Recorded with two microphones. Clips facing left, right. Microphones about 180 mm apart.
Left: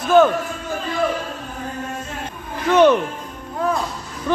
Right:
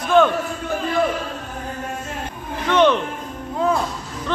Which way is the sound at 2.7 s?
10° left (ahead or behind).